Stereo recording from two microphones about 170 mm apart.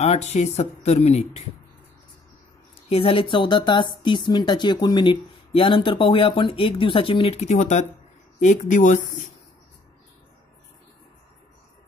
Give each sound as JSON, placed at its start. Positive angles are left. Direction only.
{"t": 0.0, "sound": "speech", "side_deg": 40}
{"t": 2.9, "sound": "speech", "side_deg": 30}